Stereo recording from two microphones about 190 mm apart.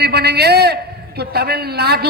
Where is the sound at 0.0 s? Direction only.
60° right (ahead or behind).